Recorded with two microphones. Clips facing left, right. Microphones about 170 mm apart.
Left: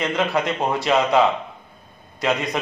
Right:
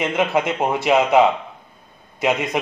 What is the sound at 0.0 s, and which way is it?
Speech, 20° right (ahead or behind).